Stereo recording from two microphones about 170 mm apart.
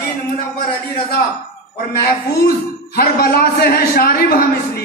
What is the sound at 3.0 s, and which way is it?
A man's voice, 60° left (ahead or behind).